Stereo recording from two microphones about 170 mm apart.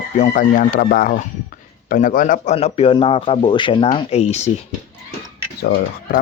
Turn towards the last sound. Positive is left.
turn(degrees=70)  # may be behind; listen again after turning